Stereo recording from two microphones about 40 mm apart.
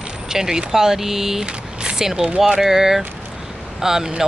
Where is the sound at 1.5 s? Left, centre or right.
Right.